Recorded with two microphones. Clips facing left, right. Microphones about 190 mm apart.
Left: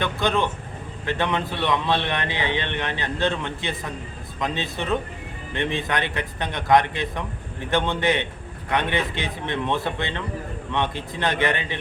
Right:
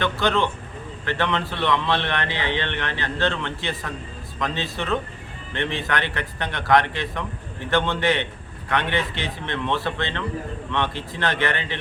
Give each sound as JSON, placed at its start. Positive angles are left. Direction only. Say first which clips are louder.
{"t": 0.0, "sound": "a man's voice", "louder": "right 1 dB", "side_deg": 15}